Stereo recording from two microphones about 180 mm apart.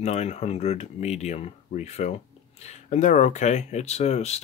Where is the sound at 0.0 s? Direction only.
40° left (ahead or behind).